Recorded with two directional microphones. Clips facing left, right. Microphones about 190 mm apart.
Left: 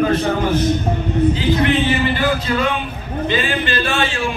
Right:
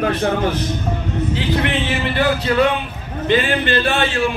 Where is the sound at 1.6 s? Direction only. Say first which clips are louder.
Left 4 dB; 65° right (ahead or behind).